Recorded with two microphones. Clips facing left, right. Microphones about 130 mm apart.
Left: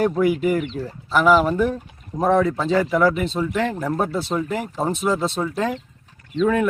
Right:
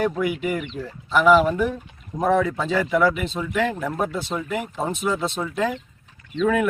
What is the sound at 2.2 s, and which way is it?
Speech, 30° left (ahead or behind).